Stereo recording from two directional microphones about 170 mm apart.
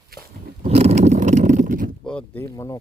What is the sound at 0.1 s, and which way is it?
Roaring cats, 60° right (ahead or behind).